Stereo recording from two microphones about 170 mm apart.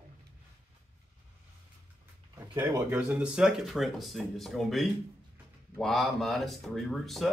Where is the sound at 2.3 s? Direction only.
20° right (ahead or behind).